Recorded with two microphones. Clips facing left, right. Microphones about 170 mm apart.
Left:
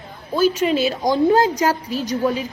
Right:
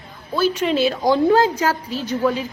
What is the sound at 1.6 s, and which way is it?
Speech, 15° left (ahead or behind).